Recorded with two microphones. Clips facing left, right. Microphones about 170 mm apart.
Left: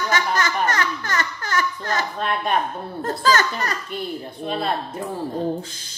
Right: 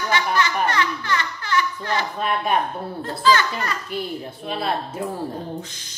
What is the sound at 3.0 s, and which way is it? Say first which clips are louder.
Speech: even; 45° left (ahead or behind).